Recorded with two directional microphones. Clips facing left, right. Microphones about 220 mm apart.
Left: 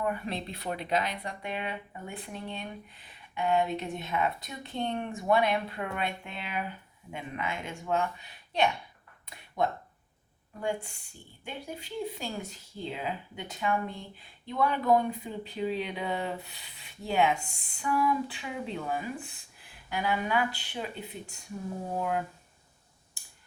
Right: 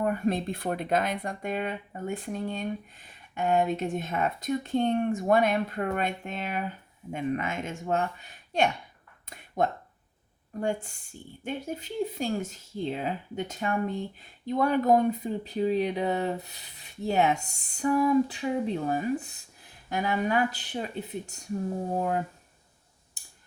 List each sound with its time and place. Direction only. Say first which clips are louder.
0.0 s speech: right 6 dB; 45° right (ahead or behind)
9.2 s a sound: right 3 dB; 45° right (ahead or behind)
11.4 s speech: right 6 dB; 45° right (ahead or behind)
21.9 s speech: right 2 dB; 35° right (ahead or behind)